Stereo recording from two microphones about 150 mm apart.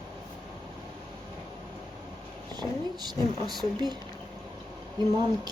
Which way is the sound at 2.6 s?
30° right (ahead or behind).